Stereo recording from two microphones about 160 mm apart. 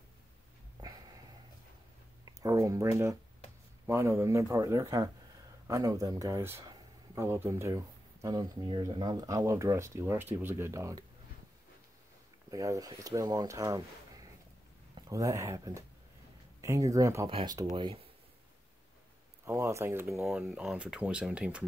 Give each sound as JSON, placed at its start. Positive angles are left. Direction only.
{"t": 0.7, "sound": "a sound", "side_deg": -25}
{"t": 2.4, "sound": "speech", "side_deg": -20}
{"t": 12.4, "sound": "speech", "side_deg": -20}
{"t": 17.3, "sound": "speech", "side_deg": -35}
{"t": 19.4, "sound": "speech", "side_deg": -20}